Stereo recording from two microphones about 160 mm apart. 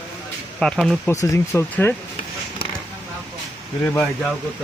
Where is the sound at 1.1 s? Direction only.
20° left (ahead or behind).